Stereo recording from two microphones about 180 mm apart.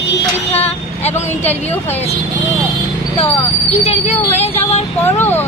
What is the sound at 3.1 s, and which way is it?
Speech, 35° left (ahead or behind).